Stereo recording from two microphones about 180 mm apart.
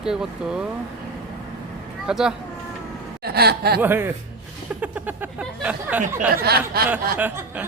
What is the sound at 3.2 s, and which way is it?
Speech, 60° right (ahead or behind).